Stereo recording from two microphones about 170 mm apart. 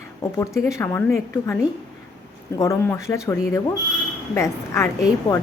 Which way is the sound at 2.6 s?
15° left (ahead or behind).